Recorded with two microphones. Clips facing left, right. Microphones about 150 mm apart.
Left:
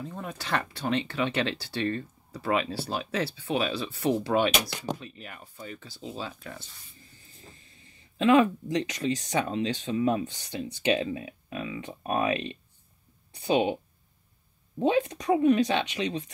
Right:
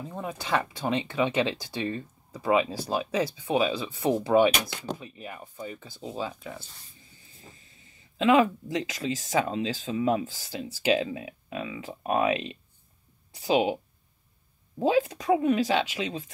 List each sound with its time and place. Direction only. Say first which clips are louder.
0.0 s speech: right 2 dB; 10° right (ahead or behind)
13.4 s speech: right 1 dB; 5° right (ahead or behind)
14.8 s speech: right 1 dB; 5° right (ahead or behind)